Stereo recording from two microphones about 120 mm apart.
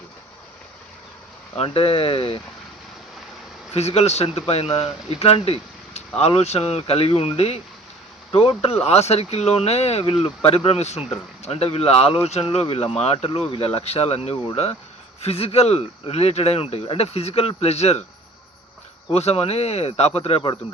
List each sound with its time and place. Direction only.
1.5 s speech: 55° left (ahead or behind)
3.7 s speech: 60° left (ahead or behind)
19.1 s speech: 60° left (ahead or behind)